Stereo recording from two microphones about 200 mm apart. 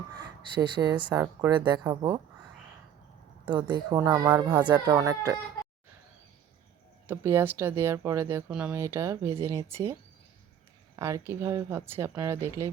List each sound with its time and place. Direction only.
0.1 s speech: 20° right (ahead or behind)
3.4 s speech: 20° right (ahead or behind)
7.1 s speech: 15° right (ahead or behind)
10.9 s speech: 15° right (ahead or behind)